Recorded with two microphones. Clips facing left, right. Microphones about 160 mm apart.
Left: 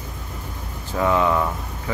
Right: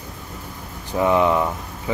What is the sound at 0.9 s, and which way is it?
Speech, 20° right (ahead or behind).